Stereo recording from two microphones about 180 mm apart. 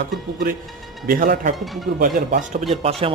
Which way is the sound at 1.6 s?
Centre (ahead or behind).